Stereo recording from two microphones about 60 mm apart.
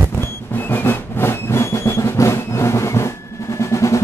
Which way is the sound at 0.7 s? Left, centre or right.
Left.